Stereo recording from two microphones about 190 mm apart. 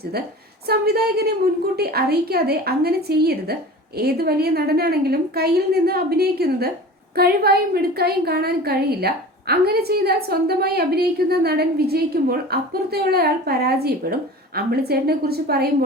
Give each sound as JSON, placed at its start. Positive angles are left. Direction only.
{"t": 0.7, "sound": "a woman's voice", "side_deg": -55}